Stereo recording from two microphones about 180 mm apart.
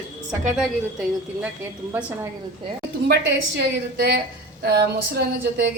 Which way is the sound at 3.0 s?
70° right (ahead or behind).